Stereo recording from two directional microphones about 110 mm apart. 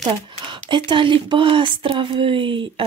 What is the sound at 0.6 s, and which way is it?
Speech, 45° right (ahead or behind).